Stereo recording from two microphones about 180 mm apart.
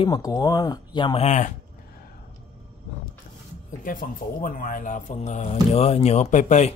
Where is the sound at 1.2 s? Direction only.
40° left (ahead or behind).